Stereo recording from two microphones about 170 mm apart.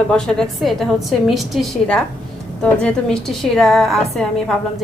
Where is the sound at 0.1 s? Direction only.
5° left (ahead or behind).